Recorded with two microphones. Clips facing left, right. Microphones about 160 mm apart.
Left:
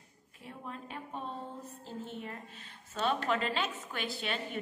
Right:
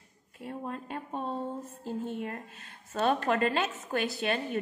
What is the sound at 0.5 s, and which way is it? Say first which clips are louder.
A woman's voice: right 7 dB; 50° right (ahead or behind).